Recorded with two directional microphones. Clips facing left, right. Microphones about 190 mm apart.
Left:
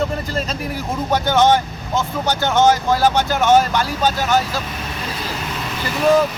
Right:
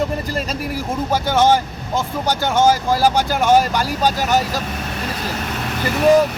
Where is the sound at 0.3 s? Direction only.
5° right (ahead or behind).